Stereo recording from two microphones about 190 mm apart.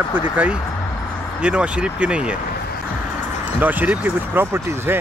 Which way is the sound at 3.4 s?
10° right (ahead or behind).